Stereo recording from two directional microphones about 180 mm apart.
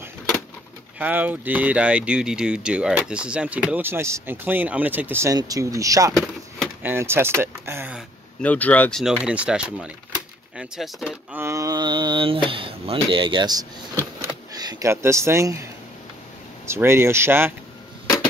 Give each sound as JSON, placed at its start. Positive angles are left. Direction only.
{"t": 0.9, "sound": "speech", "side_deg": -10}
{"t": 8.4, "sound": "speech", "side_deg": 10}
{"t": 9.0, "sound": "speech", "side_deg": -5}
{"t": 11.4, "sound": "speech", "side_deg": -20}
{"t": 16.6, "sound": "speech", "side_deg": -15}